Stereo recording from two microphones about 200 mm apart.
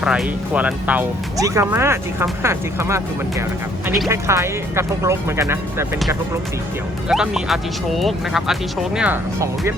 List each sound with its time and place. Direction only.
0.0 s speech: 5° right (ahead or behind)
7.1 s speech: centre (ahead or behind)